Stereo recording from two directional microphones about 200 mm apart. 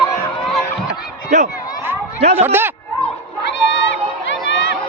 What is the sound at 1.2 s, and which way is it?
Speech, 35° right (ahead or behind).